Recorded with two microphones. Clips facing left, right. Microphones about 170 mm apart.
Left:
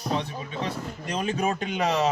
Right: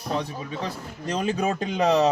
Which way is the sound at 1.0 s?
35° right (ahead or behind).